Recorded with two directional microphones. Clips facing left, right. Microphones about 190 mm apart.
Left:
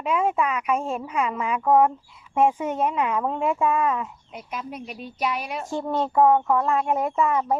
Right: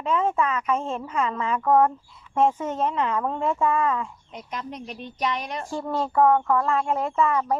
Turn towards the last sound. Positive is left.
turn(degrees=10)  # may be behind; listen again after turning